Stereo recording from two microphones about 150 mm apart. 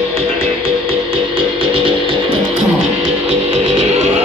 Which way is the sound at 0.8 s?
35° right (ahead or behind).